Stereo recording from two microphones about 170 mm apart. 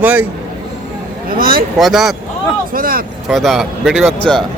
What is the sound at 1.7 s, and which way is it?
Speech, centre (ahead or behind).